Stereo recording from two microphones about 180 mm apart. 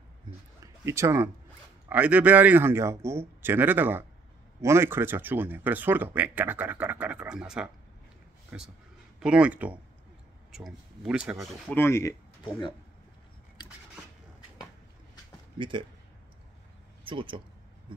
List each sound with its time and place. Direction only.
0.8 s speech: 15° right (ahead or behind); by 11.8 s centre (ahead or behind)
11.8 s speech: 15° left (ahead or behind)
15.5 s speech: 25° right (ahead or behind)
17.0 s speech: 30° right (ahead or behind)